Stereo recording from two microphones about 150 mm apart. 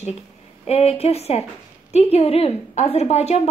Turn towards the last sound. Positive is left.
turn(degrees=45)  # may be behind; listen again after turning